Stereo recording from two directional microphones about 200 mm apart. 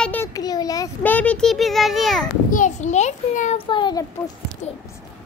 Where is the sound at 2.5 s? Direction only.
35° left (ahead or behind).